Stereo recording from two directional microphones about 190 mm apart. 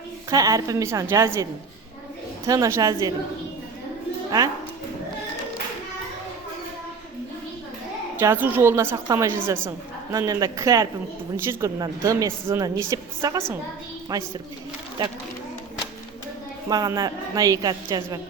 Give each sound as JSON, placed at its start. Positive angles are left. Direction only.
{"t": 0.3, "sound": "a woman's voice", "side_deg": -20}
{"t": 2.5, "sound": "a woman's voice", "side_deg": -15}
{"t": 8.2, "sound": "a woman's voice", "side_deg": -10}
{"t": 16.6, "sound": "a woman's voice", "side_deg": -20}